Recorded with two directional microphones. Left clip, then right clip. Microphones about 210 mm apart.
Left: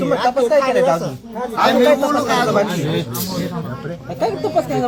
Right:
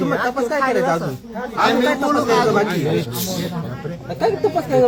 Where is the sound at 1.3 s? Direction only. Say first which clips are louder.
Left 3 dB; 35° left (ahead or behind).